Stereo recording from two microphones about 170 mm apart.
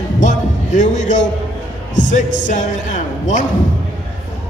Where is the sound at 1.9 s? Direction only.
45° left (ahead or behind).